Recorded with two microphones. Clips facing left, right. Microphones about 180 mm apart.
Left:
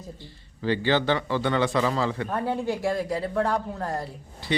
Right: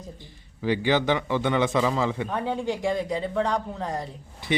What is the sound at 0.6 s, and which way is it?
Speech, 15° right (ahead or behind).